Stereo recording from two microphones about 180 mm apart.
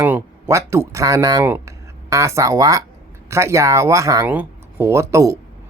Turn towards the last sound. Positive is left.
turn(degrees=-15)  # may be behind; listen again after turning